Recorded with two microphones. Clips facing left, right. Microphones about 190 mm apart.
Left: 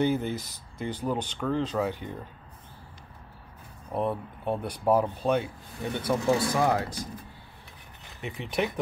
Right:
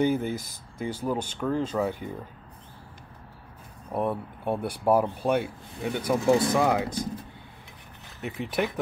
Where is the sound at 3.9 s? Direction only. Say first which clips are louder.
Right 1 dB; 10° right (ahead or behind).